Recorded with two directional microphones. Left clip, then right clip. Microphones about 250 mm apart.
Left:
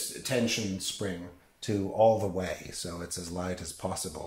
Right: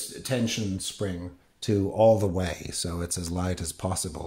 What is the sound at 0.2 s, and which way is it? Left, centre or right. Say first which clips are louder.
Speech: even; right.